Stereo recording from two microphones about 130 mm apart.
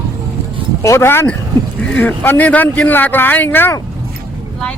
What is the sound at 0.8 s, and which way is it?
A man's voice, 20° left (ahead or behind).